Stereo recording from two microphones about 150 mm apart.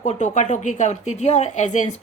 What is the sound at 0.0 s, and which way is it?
A woman's voice, 50° left (ahead or behind).